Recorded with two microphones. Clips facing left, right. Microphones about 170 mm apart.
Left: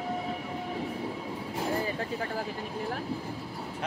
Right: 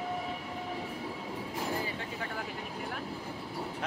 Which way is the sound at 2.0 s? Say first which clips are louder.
Left 5 dB; 40° left (ahead or behind).